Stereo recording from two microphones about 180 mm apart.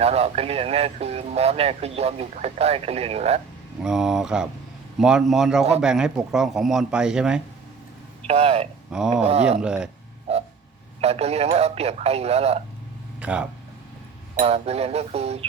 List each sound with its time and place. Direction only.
0.0 s speech: 35° right (ahead or behind)
3.8 s speech: centre (ahead or behind)
8.3 s speech: 35° right (ahead or behind)
8.9 s speech: 5° right (ahead or behind)
9.2 s speech: 35° right (ahead or behind)
9.6 s speech: 5° right (ahead or behind)
10.3 s a sound: 35° right (ahead or behind)
11.0 s speech: 35° right (ahead or behind)
13.1 s speech: 5° right (ahead or behind)
14.4 s speech: 35° right (ahead or behind)